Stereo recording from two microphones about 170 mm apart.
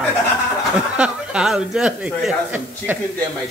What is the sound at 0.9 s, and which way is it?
Speech, 5° right (ahead or behind).